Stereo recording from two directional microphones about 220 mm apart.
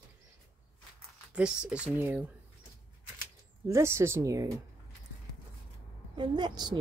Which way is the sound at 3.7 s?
10° right (ahead or behind).